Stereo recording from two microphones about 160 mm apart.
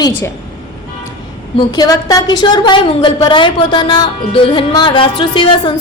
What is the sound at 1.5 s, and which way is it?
A woman's voice, 25° left (ahead or behind).